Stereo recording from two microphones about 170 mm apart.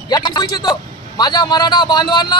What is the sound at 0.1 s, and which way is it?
A man's voice, 25° left (ahead or behind).